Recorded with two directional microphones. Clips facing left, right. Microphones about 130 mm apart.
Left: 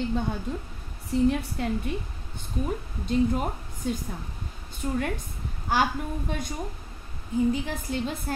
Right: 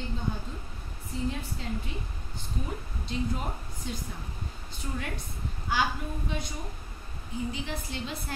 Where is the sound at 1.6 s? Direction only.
60° left (ahead or behind).